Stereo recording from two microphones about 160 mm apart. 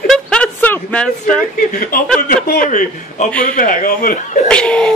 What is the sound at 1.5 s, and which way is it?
A man's voice, 60° left (ahead or behind).